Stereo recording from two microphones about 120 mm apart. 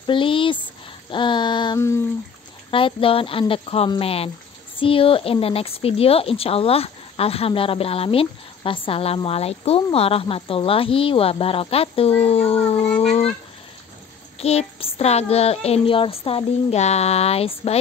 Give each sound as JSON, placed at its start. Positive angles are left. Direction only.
{"t": 0.0, "sound": "speech", "side_deg": 45}
{"t": 1.1, "sound": "child singing", "side_deg": 40}
{"t": 1.8, "sound": "a sound", "side_deg": 25}
{"t": 2.7, "sound": "speech", "side_deg": 50}
{"t": 14.4, "sound": "speech", "side_deg": 60}